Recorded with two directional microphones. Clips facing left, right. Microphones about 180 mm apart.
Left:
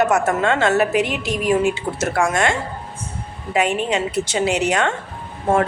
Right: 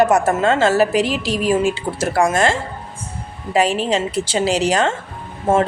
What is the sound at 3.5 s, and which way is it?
A woman's voice, 35° right (ahead or behind).